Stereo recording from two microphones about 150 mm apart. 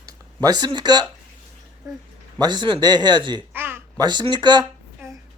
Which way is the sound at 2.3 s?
30° right (ahead or behind).